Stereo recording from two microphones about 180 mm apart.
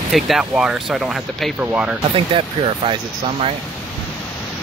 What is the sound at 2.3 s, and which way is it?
Speech, 30° right (ahead or behind).